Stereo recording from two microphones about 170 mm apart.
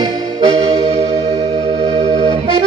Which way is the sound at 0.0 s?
25° right (ahead or behind).